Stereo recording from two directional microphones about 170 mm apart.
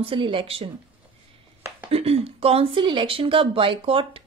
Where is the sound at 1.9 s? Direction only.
35° right (ahead or behind).